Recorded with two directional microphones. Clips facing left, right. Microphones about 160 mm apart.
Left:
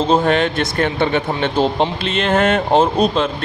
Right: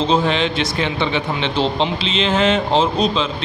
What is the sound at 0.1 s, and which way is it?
A man's voice, 50° left (ahead or behind).